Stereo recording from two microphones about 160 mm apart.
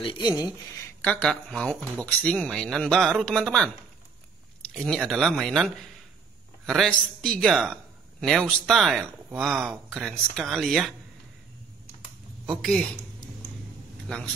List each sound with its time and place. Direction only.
0.0 s speech: 30° left (ahead or behind)
0.7 s a man's voice: 10° left (ahead or behind)
4.7 s a man's voice: 5° left (ahead or behind)
12.4 s a man's voice: centre (ahead or behind)
14.0 s speech: 5° left (ahead or behind)